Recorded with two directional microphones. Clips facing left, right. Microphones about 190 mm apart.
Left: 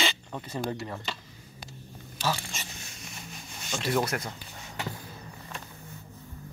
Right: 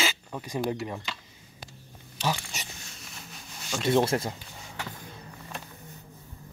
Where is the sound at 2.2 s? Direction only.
15° right (ahead or behind).